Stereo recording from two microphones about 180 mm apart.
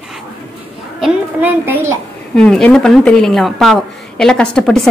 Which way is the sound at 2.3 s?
5° left (ahead or behind).